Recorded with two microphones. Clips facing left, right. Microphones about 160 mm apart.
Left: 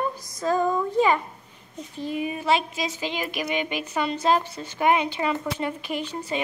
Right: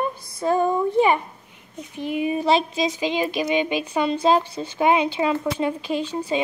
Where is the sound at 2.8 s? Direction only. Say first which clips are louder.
Right 6 dB; 15° right (ahead or behind).